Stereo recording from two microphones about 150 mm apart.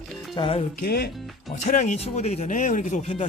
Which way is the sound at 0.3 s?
35° left (ahead or behind).